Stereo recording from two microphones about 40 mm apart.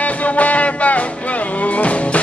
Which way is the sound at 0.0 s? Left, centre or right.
Left.